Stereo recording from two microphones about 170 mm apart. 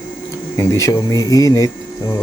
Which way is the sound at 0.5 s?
20° left (ahead or behind).